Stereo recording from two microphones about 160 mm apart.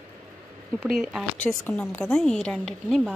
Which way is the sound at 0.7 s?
Centre (ahead or behind).